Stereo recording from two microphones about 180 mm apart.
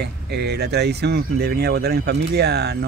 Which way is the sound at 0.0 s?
65° right (ahead or behind).